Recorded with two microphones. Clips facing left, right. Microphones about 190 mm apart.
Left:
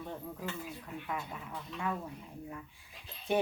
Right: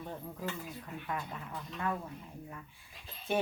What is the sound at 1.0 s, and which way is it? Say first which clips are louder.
Speech: right 1 dB; 5° left (ahead or behind).